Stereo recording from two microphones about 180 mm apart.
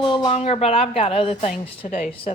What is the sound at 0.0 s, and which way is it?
Speech, 30° left (ahead or behind).